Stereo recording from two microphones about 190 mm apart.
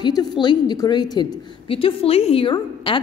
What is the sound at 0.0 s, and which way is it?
A woman's voice, 20° left (ahead or behind).